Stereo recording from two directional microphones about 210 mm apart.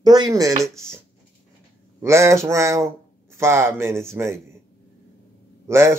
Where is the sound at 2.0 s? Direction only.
10° right (ahead or behind).